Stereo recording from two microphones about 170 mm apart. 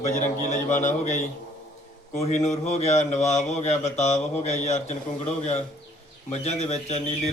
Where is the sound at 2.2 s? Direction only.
40° left (ahead or behind).